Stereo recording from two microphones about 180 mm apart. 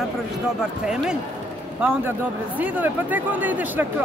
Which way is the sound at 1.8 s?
10° right (ahead or behind).